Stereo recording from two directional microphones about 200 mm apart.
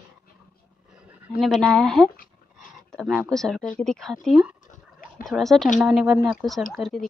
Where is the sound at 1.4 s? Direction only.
Centre (ahead or behind).